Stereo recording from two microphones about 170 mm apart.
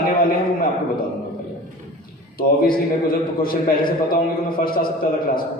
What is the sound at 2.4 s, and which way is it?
A man's voice, 60° left (ahead or behind).